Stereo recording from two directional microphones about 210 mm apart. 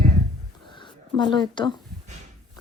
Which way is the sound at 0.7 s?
20° left (ahead or behind).